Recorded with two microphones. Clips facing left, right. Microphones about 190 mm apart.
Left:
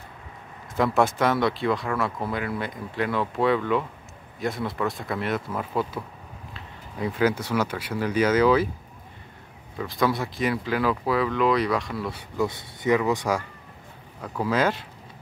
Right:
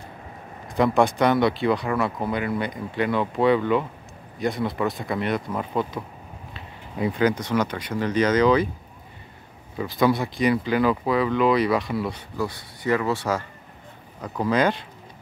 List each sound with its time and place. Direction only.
0.7 s speech: centre (ahead or behind)
9.8 s speech: centre (ahead or behind)
12.2 s speech: 20° left (ahead or behind)
14.4 s speech: 5° left (ahead or behind)